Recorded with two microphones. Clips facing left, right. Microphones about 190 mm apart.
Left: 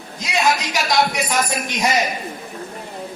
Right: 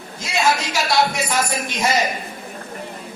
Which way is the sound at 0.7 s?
15° left (ahead or behind).